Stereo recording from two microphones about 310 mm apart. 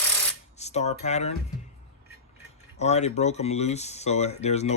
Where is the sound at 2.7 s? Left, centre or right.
Left.